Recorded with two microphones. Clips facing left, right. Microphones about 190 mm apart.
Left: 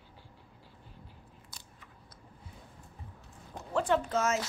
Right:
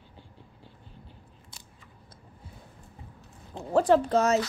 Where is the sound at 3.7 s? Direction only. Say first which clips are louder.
Right 7 dB; 35° right (ahead or behind).